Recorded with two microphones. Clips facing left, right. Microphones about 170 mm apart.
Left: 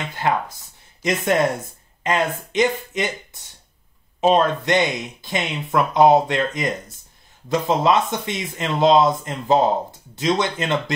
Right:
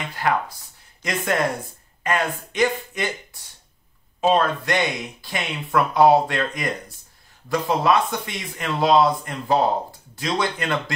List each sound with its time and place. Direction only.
0.2 s speech: 25° left (ahead or behind)